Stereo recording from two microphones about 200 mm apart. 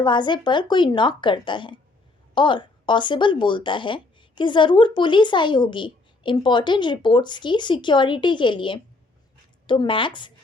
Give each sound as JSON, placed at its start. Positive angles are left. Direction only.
{"t": 0.0, "sound": "a woman's voice", "side_deg": 20}